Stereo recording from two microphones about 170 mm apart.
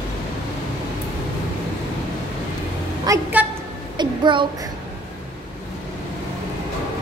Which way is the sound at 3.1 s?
20° right (ahead or behind).